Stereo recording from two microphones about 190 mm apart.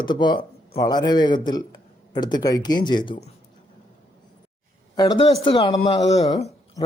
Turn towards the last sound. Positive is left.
turn(degrees=20)  # may be behind; listen again after turning